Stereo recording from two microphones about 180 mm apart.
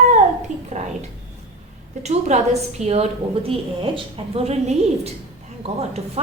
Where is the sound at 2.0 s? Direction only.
40° right (ahead or behind).